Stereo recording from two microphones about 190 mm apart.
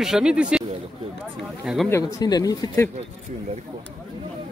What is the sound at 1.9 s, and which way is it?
Speech, 15° left (ahead or behind).